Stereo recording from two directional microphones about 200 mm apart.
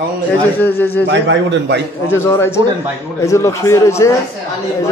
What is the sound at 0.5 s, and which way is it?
Speech, 10° left (ahead or behind).